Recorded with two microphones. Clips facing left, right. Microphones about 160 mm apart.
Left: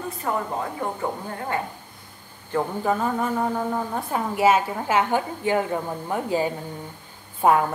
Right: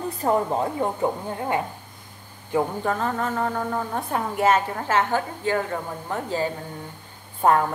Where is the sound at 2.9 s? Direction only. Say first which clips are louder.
Left 2 dB; 10° left (ahead or behind).